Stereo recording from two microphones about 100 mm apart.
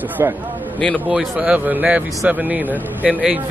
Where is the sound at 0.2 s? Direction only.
30° right (ahead or behind).